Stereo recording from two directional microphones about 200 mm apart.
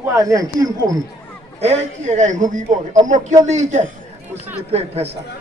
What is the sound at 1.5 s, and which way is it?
A man's voice, 30° right (ahead or behind).